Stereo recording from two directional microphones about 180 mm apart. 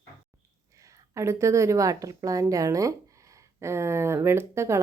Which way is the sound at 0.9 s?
15° right (ahead or behind).